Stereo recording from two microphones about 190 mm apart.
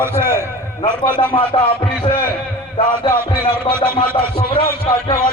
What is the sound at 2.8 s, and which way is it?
Speech, 25° left (ahead or behind).